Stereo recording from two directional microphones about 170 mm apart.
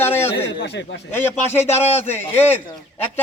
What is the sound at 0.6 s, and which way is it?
Speech, 90° left.